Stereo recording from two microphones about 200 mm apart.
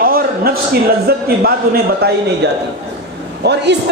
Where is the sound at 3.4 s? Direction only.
55° right (ahead or behind).